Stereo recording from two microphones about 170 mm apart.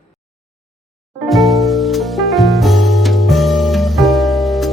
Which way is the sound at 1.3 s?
Centre (ahead or behind).